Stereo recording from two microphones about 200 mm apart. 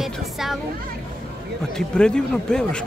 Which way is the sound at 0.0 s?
Centre (ahead or behind).